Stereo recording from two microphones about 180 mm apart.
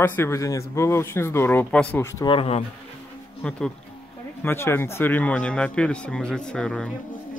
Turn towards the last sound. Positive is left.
turn(degrees=5)  # may be behind; listen again after turning